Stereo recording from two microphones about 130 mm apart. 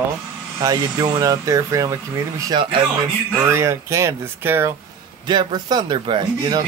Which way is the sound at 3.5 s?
20° right (ahead or behind).